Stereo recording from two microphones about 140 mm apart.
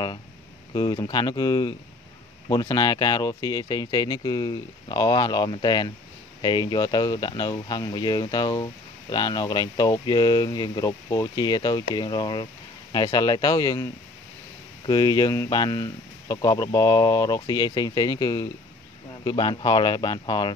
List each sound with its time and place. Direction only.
0.7 s speech: 30° left (ahead or behind)